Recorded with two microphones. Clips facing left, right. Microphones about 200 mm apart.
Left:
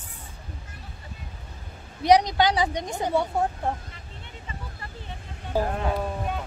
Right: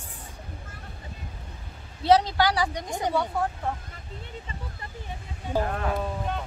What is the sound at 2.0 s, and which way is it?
Speech, 15° left (ahead or behind).